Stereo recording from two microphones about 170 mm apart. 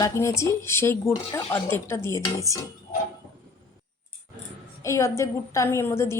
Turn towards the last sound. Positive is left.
turn(degrees=15)  # may be behind; listen again after turning